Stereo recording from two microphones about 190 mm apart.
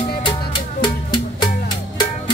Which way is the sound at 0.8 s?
25° left (ahead or behind).